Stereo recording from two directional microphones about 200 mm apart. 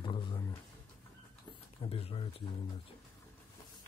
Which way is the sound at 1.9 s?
25° left (ahead or behind).